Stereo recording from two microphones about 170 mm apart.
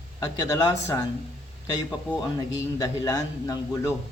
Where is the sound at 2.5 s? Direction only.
20° left (ahead or behind).